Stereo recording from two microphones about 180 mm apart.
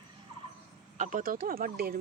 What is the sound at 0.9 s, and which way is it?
Speech, 45° right (ahead or behind).